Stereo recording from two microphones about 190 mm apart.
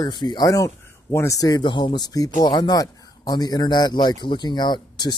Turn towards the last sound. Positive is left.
turn(degrees=20)  # may be behind; listen again after turning